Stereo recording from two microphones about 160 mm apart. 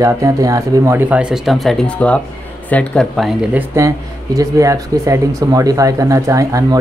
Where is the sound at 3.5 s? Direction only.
20° right (ahead or behind).